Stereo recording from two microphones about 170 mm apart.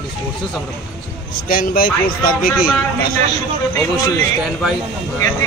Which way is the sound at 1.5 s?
55° left (ahead or behind).